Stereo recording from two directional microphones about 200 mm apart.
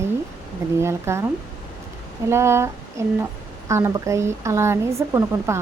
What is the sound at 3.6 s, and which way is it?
Speech, 15° right (ahead or behind).